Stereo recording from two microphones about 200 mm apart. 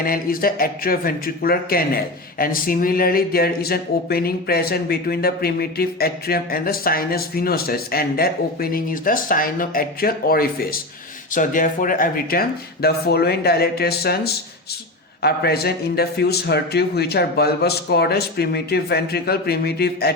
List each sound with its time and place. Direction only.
0.0 s speech: 45° left (ahead or behind)